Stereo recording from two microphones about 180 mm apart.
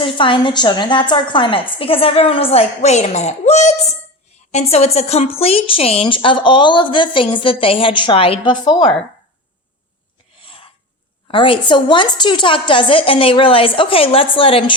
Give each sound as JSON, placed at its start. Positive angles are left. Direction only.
{"t": 0.0, "sound": "a woman's voice", "side_deg": 25}
{"t": 10.4, "sound": "a sound", "side_deg": 30}
{"t": 11.3, "sound": "a woman's voice", "side_deg": 30}